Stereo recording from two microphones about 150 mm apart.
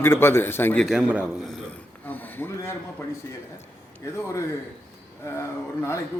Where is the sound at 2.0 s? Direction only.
10° left (ahead or behind).